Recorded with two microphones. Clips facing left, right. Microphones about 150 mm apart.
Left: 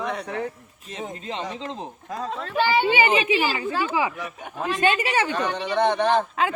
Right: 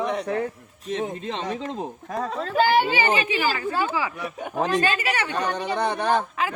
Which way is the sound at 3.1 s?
40° right (ahead or behind).